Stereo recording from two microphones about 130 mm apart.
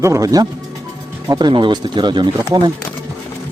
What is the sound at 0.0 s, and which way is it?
Speech, 25° right (ahead or behind).